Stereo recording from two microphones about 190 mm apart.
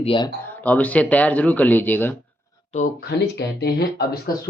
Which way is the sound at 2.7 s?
50° left (ahead or behind).